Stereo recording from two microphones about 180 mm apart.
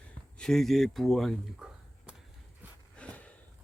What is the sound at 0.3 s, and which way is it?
Speech, 5° left (ahead or behind).